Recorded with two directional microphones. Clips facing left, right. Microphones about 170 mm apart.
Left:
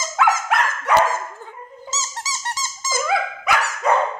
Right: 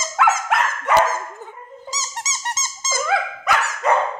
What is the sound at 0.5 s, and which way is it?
Dog, 5° right (ahead or behind).